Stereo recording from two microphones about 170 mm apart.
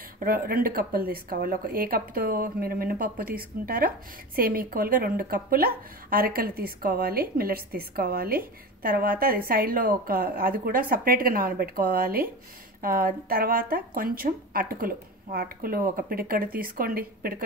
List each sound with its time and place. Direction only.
0.2 s a woman's voice: 60° right (ahead or behind)